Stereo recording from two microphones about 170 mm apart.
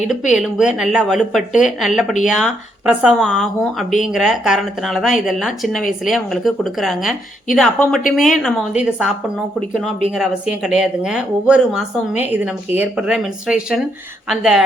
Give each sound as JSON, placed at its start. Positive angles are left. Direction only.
{"t": 0.3, "sound": "speech", "side_deg": -5}